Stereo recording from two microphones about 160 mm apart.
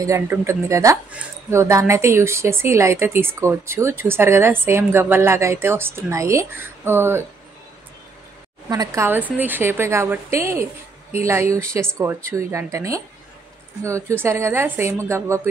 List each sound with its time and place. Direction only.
0.0 s speech: 20° right (ahead or behind)
8.6 s speech: 20° right (ahead or behind)